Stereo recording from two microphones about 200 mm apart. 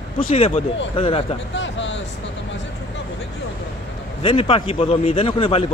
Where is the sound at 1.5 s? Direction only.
65° left (ahead or behind).